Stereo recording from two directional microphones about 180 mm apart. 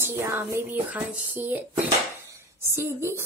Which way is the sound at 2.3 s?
15° right (ahead or behind).